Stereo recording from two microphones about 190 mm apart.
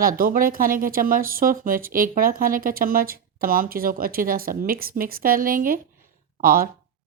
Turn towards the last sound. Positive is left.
turn(degrees=-50)  # may be behind; listen again after turning